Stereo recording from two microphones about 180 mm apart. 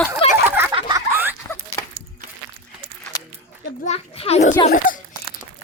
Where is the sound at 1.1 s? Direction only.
10° right (ahead or behind).